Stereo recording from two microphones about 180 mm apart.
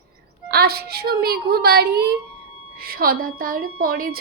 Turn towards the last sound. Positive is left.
turn(degrees=-55)  # may be behind; listen again after turning